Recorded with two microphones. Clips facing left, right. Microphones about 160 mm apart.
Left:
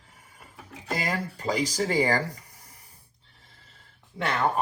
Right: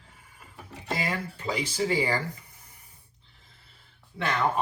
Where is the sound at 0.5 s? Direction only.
Centre (ahead or behind).